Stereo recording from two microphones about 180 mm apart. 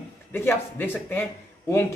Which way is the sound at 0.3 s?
10° left (ahead or behind).